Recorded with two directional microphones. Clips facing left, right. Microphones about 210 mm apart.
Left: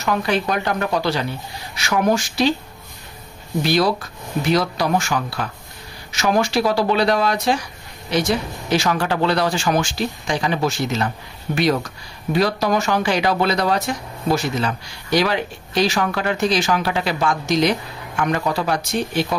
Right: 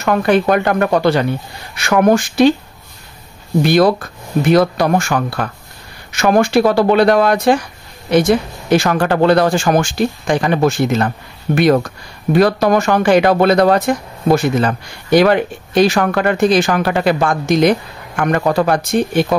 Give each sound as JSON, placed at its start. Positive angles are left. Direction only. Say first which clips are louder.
{"t": 0.0, "sound": "speech", "louder": "right 7 dB", "side_deg": -55}
{"t": 3.6, "sound": "speech", "louder": "right 6 dB", "side_deg": -55}